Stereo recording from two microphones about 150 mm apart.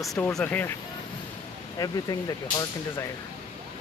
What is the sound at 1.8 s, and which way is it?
Speech, 25° left (ahead or behind).